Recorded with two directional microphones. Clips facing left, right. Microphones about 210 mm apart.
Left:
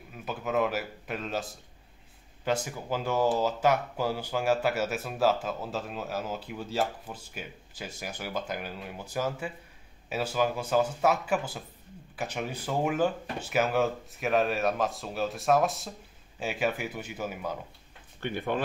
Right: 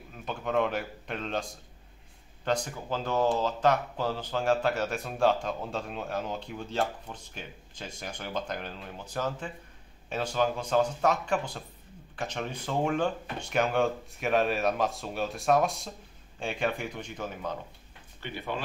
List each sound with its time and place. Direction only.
0.1 s speech: 5° left (ahead or behind)
18.2 s speech: 50° left (ahead or behind)